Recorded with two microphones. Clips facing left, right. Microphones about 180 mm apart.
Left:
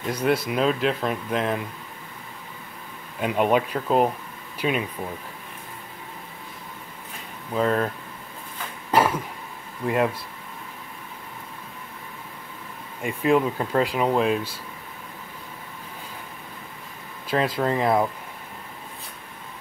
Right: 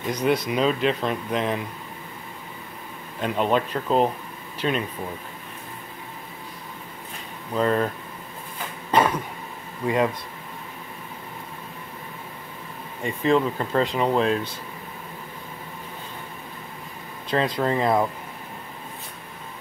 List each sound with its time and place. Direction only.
0.3 s speech: 5° left (ahead or behind)
3.2 s speech: 10° left (ahead or behind)
7.5 s speech: centre (ahead or behind)
8.9 s cough: 5° left (ahead or behind)
9.8 s speech: centre (ahead or behind)
13.0 s speech: 10° left (ahead or behind)
17.3 s speech: 5° left (ahead or behind)